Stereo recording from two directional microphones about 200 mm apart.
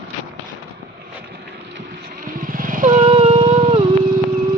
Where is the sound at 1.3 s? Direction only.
55° right (ahead or behind); by 3.8 s 25° right (ahead or behind).